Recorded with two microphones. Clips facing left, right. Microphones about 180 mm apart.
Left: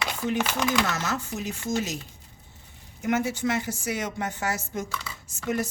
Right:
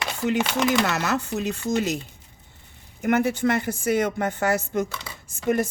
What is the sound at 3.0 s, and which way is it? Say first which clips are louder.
Speech: right 4 dB; 60° right (ahead or behind).